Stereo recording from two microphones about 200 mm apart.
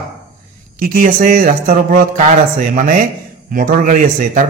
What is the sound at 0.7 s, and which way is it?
Speech, 45° right (ahead or behind).